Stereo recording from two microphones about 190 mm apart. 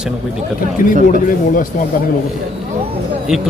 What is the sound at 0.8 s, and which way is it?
Speech, 45° left (ahead or behind).